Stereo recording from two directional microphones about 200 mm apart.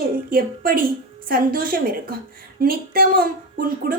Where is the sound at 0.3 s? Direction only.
45° right (ahead or behind).